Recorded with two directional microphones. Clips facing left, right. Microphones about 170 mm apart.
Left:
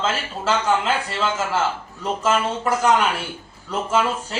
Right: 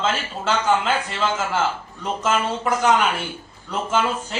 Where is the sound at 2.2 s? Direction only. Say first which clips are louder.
Left 1 dB; 5° left (ahead or behind).